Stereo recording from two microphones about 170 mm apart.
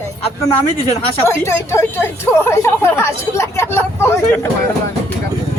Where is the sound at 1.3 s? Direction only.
15° left (ahead or behind).